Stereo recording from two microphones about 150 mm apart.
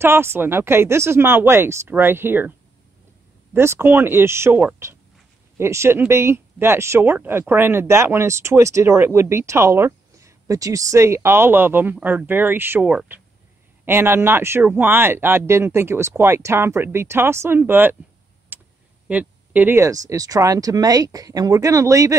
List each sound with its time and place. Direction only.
0.0 s speech: 15° right (ahead or behind)
3.5 s speech: 15° right (ahead or behind)
18.5 s tick: 10° right (ahead or behind)
19.0 s speech: 10° right (ahead or behind)